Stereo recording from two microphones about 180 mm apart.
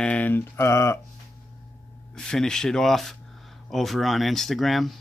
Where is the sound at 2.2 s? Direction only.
5° left (ahead or behind).